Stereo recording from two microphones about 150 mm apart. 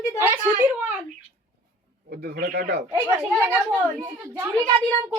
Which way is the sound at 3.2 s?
10° right (ahead or behind).